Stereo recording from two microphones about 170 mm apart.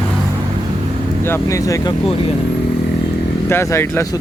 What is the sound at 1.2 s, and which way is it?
Speech, 15° left (ahead or behind).